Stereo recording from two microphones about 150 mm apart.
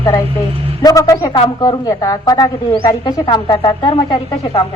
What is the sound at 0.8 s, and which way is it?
A man's voice, 25° left (ahead or behind).